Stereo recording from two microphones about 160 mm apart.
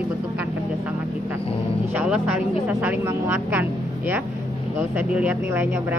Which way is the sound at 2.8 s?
10° right (ahead or behind).